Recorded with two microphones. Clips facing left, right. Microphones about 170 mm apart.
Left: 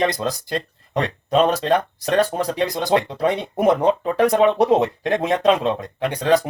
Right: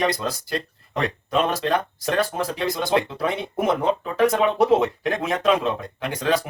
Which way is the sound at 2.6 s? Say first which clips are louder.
Left 2 dB; 30° left (ahead or behind).